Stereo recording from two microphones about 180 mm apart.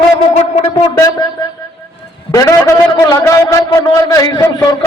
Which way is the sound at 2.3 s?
15° left (ahead or behind).